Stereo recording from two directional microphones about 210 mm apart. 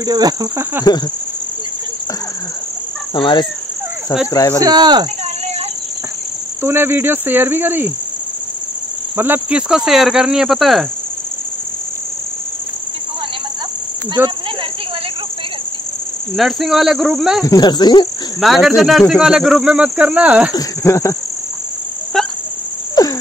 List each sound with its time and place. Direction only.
0.0 s speech: 20° right (ahead or behind)
3.2 s speech: 20° left (ahead or behind)
4.3 s cricket: 15° left (ahead or behind)
4.6 s speech: 20° right (ahead or behind)
6.6 s speech: 10° right (ahead or behind)
9.1 s speech: 10° right (ahead or behind)
14.2 s speech: 10° right (ahead or behind)
16.3 s speech: centre (ahead or behind)
17.5 s speech: 20° left (ahead or behind)
18.4 s speech: centre (ahead or behind)
20.5 s cricket: 15° left (ahead or behind)
22.1 s a sound: centre (ahead or behind)
23.0 s cricket: 15° left (ahead or behind)